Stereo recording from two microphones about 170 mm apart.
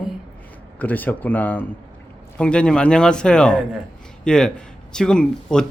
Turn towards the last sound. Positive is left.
turn(degrees=5)  # may be behind; listen again after turning